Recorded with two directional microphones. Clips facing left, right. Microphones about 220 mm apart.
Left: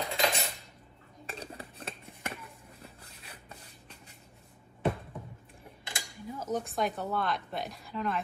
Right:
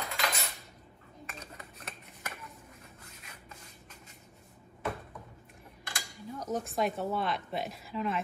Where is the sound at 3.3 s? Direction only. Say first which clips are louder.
Left 5 dB; 35° left (ahead or behind).